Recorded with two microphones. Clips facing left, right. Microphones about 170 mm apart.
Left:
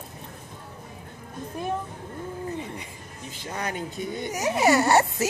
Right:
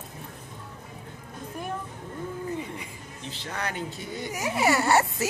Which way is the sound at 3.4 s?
10° left (ahead or behind).